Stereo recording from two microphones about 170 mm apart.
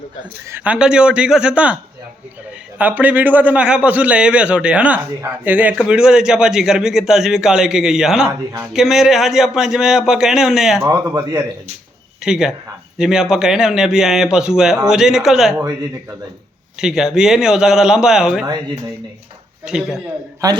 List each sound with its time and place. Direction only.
0.5 s a man's voice: 10° right (ahead or behind)
10.8 s speech: 15° right (ahead or behind)
12.2 s a man's voice: 5° right (ahead or behind)
16.8 s a man's voice: 5° right (ahead or behind)
19.6 s a man's voice: 5° right (ahead or behind)
20.4 s a man's voice: 20° right (ahead or behind)